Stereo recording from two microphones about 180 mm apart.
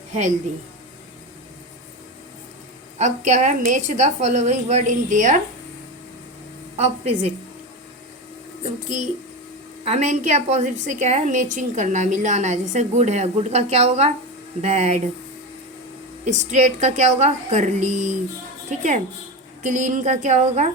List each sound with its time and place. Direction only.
3.0 s a woman's voice: 45° right (ahead or behind)
6.7 s a woman's voice: 35° right (ahead or behind)
9.8 s a woman's voice: 40° right (ahead or behind)
16.2 s a woman's voice: 40° right (ahead or behind)